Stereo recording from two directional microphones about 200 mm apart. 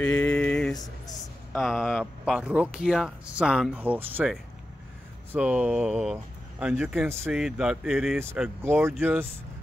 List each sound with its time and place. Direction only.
0.0 s a sound: 5° left (ahead or behind)
1.5 s speech: centre (ahead or behind)
8.2 s speech: 10° right (ahead or behind)